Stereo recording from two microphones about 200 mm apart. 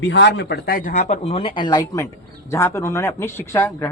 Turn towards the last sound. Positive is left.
turn(degrees=10)  # may be behind; listen again after turning